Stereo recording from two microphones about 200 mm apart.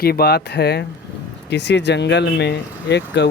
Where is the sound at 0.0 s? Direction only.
50° left (ahead or behind).